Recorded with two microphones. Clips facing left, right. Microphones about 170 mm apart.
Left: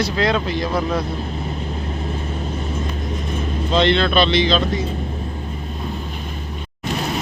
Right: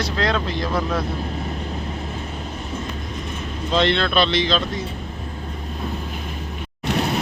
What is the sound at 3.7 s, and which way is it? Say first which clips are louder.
Speech: left 2 dB; centre (ahead or behind).